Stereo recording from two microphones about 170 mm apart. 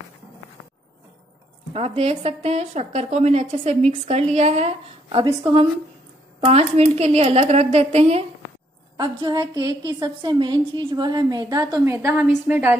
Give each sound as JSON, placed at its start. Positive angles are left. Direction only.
{"t": 1.7, "sound": "a woman's voice", "side_deg": -35}
{"t": 8.9, "sound": "a woman's voice", "side_deg": -25}